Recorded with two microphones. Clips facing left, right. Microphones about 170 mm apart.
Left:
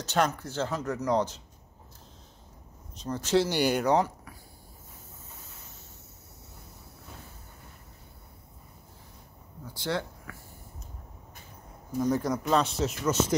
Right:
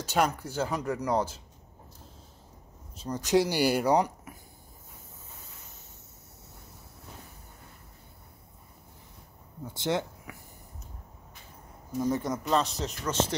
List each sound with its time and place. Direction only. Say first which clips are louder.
0.0 s speech: even; 10° right (ahead or behind)
3.0 s speech: right 1 dB; 15° right (ahead or behind)
9.8 s speech: right 2 dB; 20° right (ahead or behind)
12.0 s speech: left 2 dB; centre (ahead or behind)